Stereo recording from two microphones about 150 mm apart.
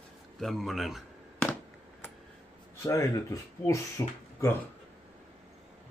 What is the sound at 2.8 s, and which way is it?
Speech, 20° left (ahead or behind).